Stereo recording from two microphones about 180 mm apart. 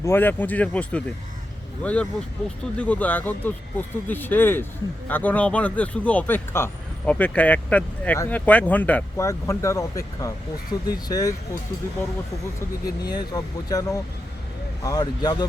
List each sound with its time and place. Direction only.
0.0 s speech: 10° left (ahead or behind)
13.0 s speech: 20° left (ahead or behind)